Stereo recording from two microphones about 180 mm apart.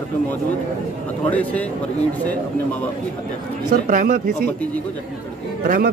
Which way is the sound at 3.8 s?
45° right (ahead or behind).